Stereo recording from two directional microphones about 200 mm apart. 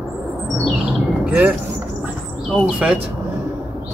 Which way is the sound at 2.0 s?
Centre (ahead or behind).